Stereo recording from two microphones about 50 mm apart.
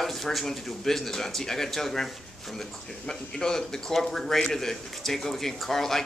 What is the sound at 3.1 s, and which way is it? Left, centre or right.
A man's voice, centre.